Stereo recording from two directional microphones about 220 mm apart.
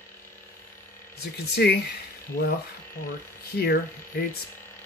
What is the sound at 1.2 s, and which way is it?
Speech, 45° left (ahead or behind).